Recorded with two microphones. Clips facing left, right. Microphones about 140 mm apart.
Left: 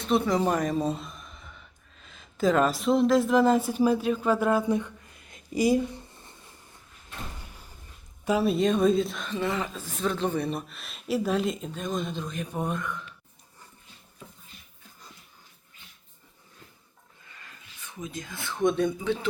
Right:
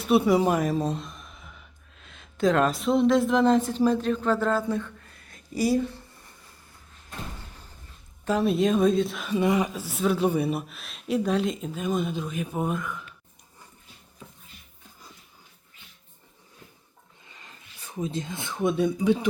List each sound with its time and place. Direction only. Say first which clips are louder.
0.0 s speech: right 4 dB; 10° right (ahead or behind); by 6.3 s 15° left (ahead or behind)
8.2 s a woman's voice: right 1 dB; 5° left (ahead or behind)
17.2 s a sound: even; 20° right (ahead or behind)
17.8 s speech: right 7 dB; 35° right (ahead or behind)
18.6 s speech: right 1 dB; 5° right (ahead or behind)